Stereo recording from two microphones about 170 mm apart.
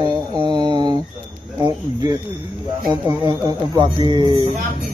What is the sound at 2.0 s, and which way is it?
A man's voice, 25° right (ahead or behind).